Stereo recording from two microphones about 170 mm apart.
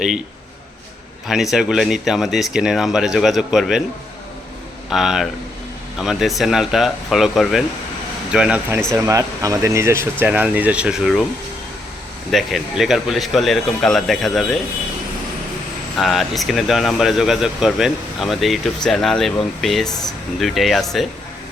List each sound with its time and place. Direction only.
1.3 s speech: centre (ahead or behind)
4.9 s speech: centre (ahead or behind)
9.0 s speech: 20° right (ahead or behind); by 11.3 s centre (ahead or behind)
12.3 s speech: centre (ahead or behind)
16.0 s speech: centre (ahead or behind)